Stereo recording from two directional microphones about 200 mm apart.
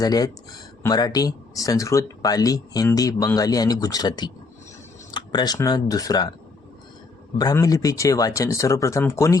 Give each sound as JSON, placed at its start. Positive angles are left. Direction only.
{"t": 0.0, "sound": "speech", "side_deg": 20}
{"t": 7.3, "sound": "speech", "side_deg": 20}